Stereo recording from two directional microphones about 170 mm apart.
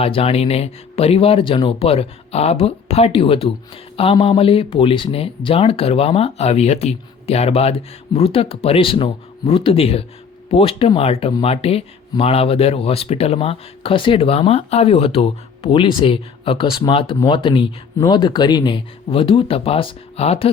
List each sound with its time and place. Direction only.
0.0 s speech: 35° left (ahead or behind)